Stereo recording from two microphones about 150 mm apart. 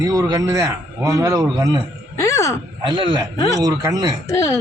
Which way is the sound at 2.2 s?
20° left (ahead or behind).